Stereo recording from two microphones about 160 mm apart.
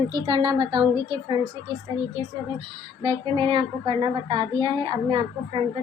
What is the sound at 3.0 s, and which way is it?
Speech, 35° right (ahead or behind).